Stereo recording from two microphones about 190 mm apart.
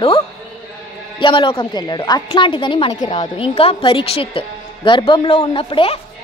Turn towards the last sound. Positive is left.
turn(degrees=30)  # may be behind; listen again after turning